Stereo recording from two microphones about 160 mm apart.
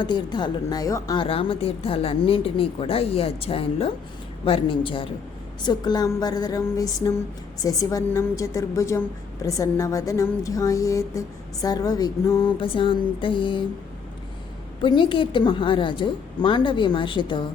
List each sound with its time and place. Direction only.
0.0 s a woman's voice: 30° left (ahead or behind)
14.8 s a woman's voice: 30° left (ahead or behind)